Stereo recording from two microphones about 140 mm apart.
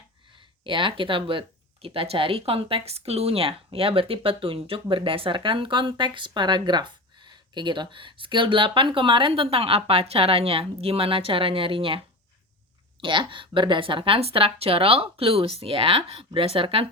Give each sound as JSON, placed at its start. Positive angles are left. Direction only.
{"t": 0.6, "sound": "speech", "side_deg": -35}
{"t": 13.0, "sound": "speech", "side_deg": -35}